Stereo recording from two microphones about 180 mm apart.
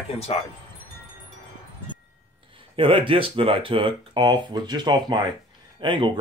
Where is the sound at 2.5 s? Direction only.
30° right (ahead or behind).